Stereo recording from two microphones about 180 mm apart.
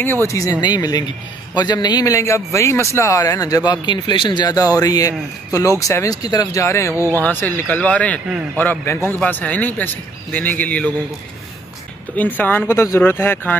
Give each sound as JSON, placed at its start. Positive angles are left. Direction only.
{"t": 0.0, "sound": "a man's voice", "side_deg": 15}
{"t": 12.2, "sound": "a man's voice", "side_deg": 10}